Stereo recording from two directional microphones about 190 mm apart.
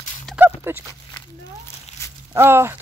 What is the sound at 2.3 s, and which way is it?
Speech, 15° right (ahead or behind).